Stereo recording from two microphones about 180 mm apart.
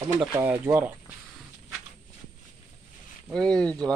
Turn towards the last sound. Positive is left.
turn(degrees=5)  # may be behind; listen again after turning